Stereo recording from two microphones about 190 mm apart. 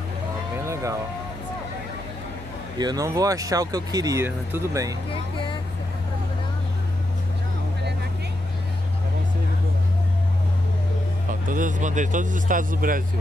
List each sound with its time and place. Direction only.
2.8 s speech: 20° right (ahead or behind)
11.4 s speech: 45° right (ahead or behind)